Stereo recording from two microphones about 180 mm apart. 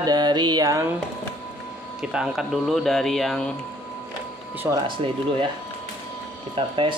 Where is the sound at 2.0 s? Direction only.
5° right (ahead or behind).